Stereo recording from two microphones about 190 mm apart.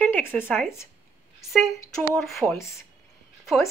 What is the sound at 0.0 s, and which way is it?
Speech, 10° left (ahead or behind).